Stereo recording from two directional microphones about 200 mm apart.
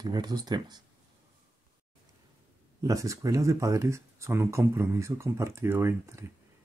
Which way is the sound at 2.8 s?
15° right (ahead or behind).